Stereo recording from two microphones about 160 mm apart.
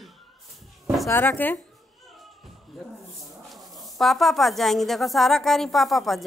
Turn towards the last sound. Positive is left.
turn(degrees=0)  # may be behind; listen again after turning